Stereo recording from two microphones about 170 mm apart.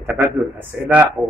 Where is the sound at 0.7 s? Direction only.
5° right (ahead or behind).